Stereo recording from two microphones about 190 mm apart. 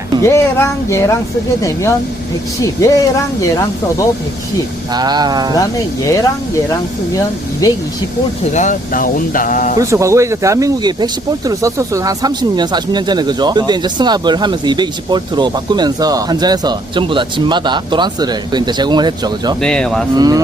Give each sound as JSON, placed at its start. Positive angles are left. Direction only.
{"t": 0.2, "sound": "speech", "side_deg": 15}
{"t": 2.6, "sound": "speech", "side_deg": 15}
{"t": 4.9, "sound": "speech", "side_deg": -20}
{"t": 7.6, "sound": "speech", "side_deg": 15}
{"t": 8.5, "sound": "speech", "side_deg": 40}
{"t": 9.7, "sound": "speech", "side_deg": -15}
{"t": 19.6, "sound": "speech", "side_deg": 5}
{"t": 20.1, "sound": "speech", "side_deg": -20}